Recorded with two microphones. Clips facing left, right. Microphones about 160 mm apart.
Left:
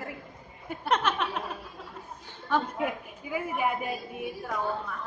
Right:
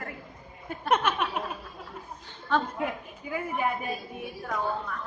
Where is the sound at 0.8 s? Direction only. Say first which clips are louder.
Right 1 dB; 10° right (ahead or behind).